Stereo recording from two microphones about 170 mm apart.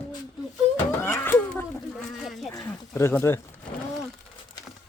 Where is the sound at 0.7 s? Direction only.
15° left (ahead or behind).